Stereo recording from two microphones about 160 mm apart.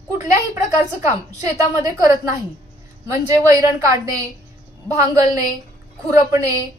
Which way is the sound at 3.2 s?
25° right (ahead or behind).